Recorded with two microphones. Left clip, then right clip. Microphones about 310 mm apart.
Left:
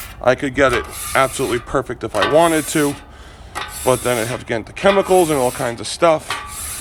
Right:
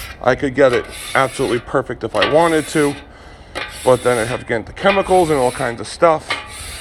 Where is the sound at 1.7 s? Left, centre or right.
Left.